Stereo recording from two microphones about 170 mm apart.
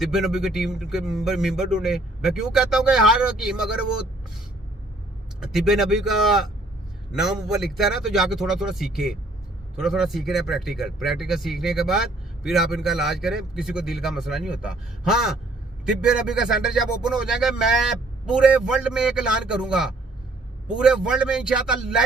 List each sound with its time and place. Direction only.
0.0 s a man's voice: centre (ahead or behind)
5.4 s a man's voice: centre (ahead or behind)